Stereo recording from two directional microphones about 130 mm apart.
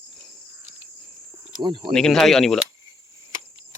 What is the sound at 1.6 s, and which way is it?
Speech, 35° right (ahead or behind).